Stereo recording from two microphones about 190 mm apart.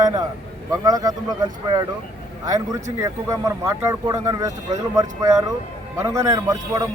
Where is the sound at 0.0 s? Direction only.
20° right (ahead or behind).